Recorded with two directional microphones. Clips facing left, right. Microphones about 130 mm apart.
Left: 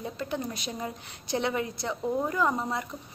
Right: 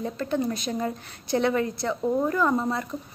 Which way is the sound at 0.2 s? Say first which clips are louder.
Right 7 dB; 15° left (ahead or behind).